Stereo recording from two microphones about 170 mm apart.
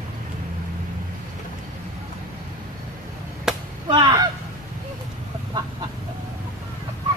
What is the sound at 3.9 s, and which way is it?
Honk, 25° right (ahead or behind).